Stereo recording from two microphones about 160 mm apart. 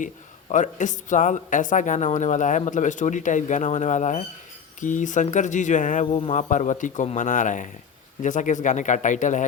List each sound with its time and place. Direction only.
0.5 s speech: 50° left (ahead or behind)
6.1 s speech: 35° left (ahead or behind)
6.5 s speech: 50° left (ahead or behind)